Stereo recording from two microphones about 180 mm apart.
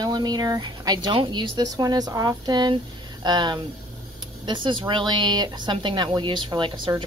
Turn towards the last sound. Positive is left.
turn(degrees=-30)  # may be behind; listen again after turning